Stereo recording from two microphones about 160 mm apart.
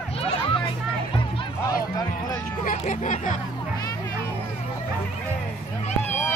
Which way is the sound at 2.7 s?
50° left (ahead or behind).